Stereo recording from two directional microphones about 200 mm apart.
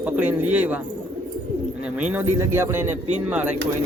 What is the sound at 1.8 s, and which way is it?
Speech, 5° right (ahead or behind).